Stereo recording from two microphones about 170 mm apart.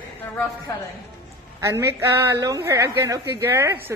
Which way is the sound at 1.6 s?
15° right (ahead or behind).